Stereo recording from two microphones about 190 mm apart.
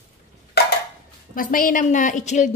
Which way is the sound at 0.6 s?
60° left (ahead or behind).